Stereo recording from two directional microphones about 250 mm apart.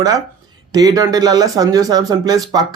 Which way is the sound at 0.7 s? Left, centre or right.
Centre.